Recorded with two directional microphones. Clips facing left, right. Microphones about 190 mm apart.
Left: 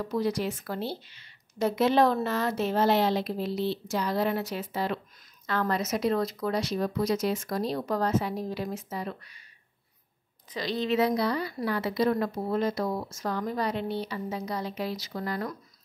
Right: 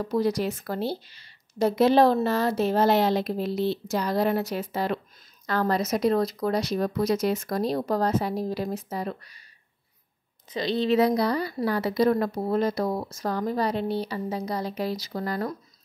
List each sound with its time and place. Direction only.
0.0 s a woman's voice: 40° right (ahead or behind)
10.5 s a woman's voice: 25° right (ahead or behind)